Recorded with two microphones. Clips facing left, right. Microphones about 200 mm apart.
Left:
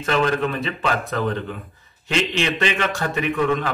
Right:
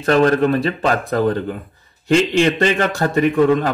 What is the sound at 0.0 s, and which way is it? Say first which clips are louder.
A man's voice: right 7 dB; 45° right (ahead or behind).